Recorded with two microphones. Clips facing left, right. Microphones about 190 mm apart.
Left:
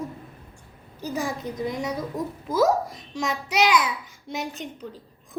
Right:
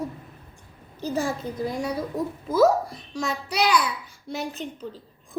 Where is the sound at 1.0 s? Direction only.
15° left (ahead or behind).